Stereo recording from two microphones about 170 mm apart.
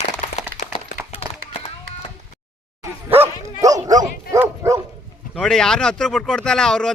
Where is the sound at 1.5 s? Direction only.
35° left (ahead or behind).